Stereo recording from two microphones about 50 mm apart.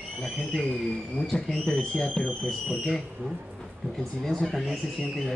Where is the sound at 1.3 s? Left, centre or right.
Centre.